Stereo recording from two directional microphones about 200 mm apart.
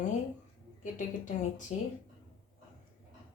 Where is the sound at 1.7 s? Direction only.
35° left (ahead or behind).